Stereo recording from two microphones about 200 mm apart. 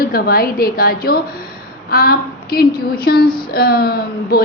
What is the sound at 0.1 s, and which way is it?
A woman's voice, 50° left (ahead or behind).